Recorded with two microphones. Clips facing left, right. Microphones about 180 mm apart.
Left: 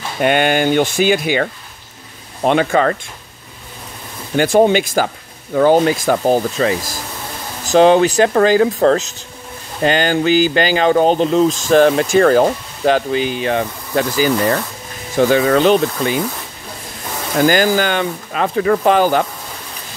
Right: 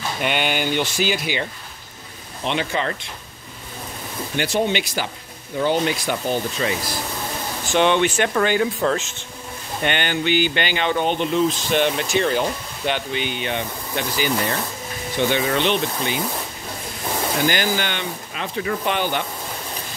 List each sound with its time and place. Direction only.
0.2 s speech: 50° left (ahead or behind)
2.6 s speech: 55° left (ahead or behind)
4.4 s speech: 45° left (ahead or behind)
17.4 s speech: 45° left (ahead or behind)
18.9 s speech: 40° left (ahead or behind)